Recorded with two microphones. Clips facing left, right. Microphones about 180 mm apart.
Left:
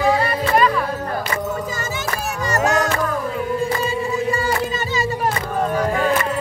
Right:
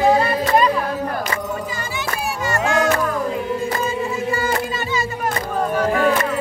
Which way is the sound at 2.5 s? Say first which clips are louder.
Left 1 dB; 40° left (ahead or behind).